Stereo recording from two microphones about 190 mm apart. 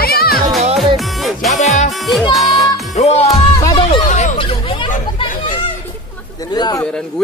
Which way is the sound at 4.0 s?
40° left (ahead or behind).